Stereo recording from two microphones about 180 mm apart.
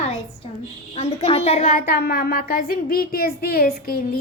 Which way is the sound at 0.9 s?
35° left (ahead or behind).